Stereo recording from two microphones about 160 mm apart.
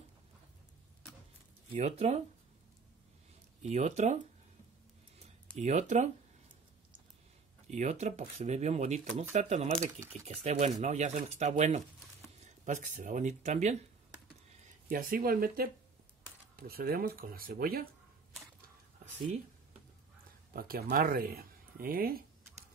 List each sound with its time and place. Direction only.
1.7 s speech: 40° right (ahead or behind)
3.6 s speech: 45° right (ahead or behind)
5.6 s speech: 45° right (ahead or behind)
7.7 s speech: 45° right (ahead or behind)
14.9 s speech: 65° right (ahead or behind)
20.5 s speech: 65° right (ahead or behind)